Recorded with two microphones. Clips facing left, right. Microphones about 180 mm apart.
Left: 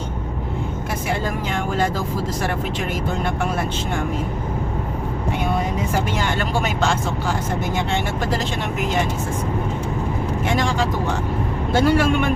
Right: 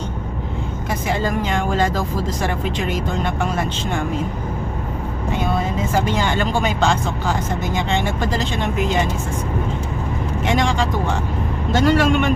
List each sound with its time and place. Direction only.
1.5 s speech: 5° left (ahead or behind)
5.5 s speech: 15° left (ahead or behind)
10.4 s speech: 90° right
11.7 s speech: 10° left (ahead or behind)